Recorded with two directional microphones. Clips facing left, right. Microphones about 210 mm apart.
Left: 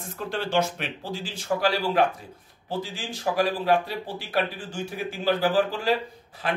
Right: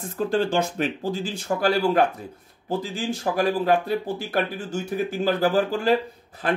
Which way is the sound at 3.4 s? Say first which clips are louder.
Right 2 dB; 50° right (ahead or behind).